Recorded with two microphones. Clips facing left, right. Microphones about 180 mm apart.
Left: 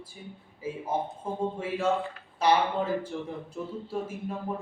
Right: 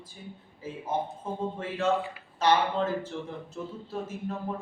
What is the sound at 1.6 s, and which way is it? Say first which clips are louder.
Speech: right 2 dB; 10° left (ahead or behind).